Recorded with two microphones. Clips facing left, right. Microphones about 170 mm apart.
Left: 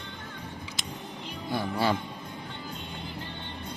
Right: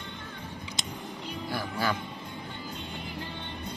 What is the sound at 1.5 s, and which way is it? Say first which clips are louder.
Music: left 4 dB; 25° left (ahead or behind).